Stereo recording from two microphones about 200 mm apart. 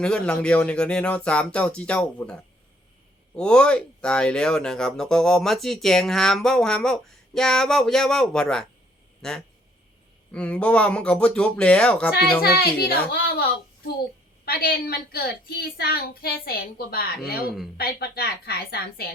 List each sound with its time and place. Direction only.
0.0 s speech: 5° left (ahead or behind)
3.3 s speech: 5° left (ahead or behind)
12.4 s a woman's voice: 50° left (ahead or behind)